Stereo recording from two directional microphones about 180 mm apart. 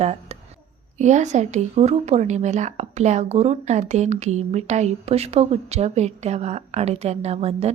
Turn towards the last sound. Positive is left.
turn(degrees=-35)  # may be behind; listen again after turning